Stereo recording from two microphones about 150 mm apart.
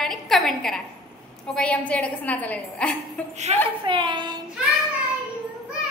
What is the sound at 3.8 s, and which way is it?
Speech, 30° right (ahead or behind).